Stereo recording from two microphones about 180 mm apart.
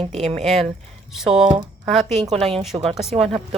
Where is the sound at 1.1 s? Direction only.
5° right (ahead or behind).